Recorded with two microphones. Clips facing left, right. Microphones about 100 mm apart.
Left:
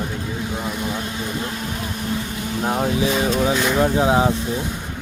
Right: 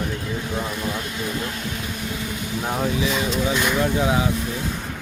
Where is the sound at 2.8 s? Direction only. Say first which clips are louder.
Left 3 dB; 40° left (ahead or behind).